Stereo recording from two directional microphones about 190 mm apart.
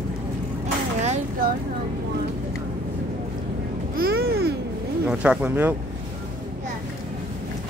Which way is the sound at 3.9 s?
55° right (ahead or behind).